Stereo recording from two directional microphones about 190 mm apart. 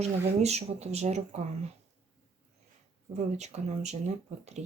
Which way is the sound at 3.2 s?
35° right (ahead or behind).